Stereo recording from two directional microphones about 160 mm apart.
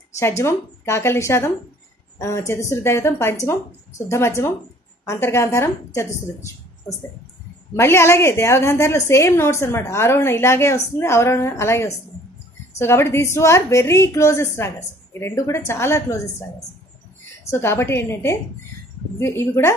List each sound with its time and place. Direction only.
0.2 s a woman's voice: 15° left (ahead or behind)
7.7 s a woman's voice: 15° left (ahead or behind)
17.5 s a woman's voice: 15° left (ahead or behind)